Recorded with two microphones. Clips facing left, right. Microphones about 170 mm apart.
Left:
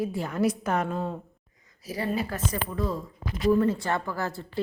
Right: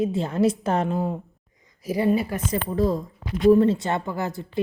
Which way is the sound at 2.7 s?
40° right (ahead or behind).